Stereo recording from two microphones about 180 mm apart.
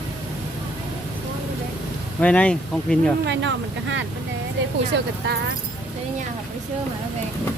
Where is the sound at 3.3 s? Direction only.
80° right.